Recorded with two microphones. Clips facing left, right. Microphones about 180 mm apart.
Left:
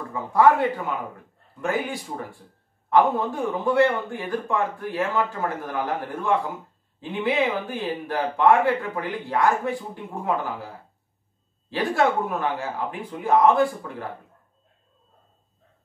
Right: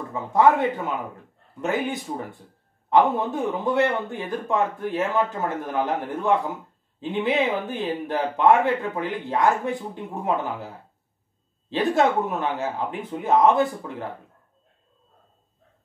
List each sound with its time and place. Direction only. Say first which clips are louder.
0.1 s speech: even; 20° right (ahead or behind)
11.7 s speech: right 2 dB; 20° right (ahead or behind)